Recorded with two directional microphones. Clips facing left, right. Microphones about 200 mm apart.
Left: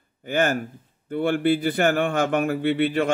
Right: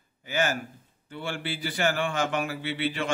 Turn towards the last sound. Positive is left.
turn(degrees=55)  # may be behind; listen again after turning